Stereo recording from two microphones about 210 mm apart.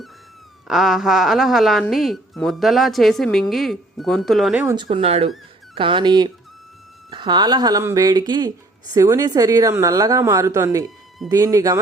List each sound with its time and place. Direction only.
0.7 s a woman's voice: centre (ahead or behind)
4.7 s speech: 25° right (ahead or behind)